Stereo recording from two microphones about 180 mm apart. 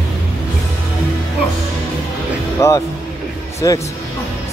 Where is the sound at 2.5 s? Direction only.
15° left (ahead or behind).